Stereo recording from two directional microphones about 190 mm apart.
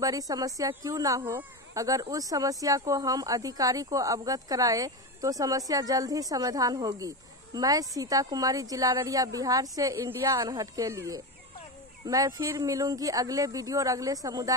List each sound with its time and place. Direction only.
0.3 s speech: 20° right (ahead or behind)